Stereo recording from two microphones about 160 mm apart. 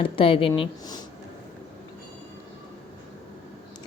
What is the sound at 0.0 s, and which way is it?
Speech, 35° left (ahead or behind).